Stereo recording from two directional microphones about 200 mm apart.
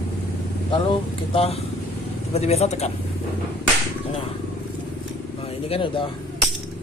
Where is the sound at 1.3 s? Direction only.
30° left (ahead or behind).